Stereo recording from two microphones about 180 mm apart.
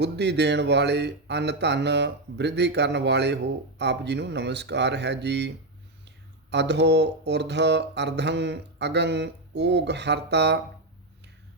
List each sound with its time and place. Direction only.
0.0 s speech: 70° right (ahead or behind)
6.5 s speech: 70° right (ahead or behind)